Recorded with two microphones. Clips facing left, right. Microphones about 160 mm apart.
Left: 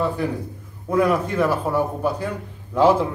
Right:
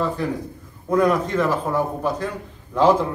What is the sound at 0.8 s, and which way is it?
Speech, 10° left (ahead or behind).